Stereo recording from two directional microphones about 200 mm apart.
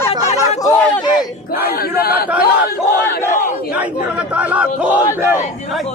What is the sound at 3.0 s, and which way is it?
Battle cry, 15° left (ahead or behind).